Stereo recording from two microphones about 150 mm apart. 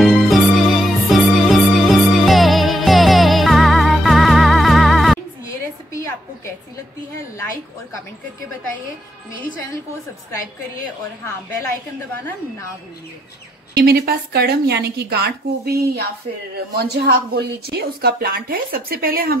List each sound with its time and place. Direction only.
0.0 s music: centre (ahead or behind)
13.7 s speech: 90° right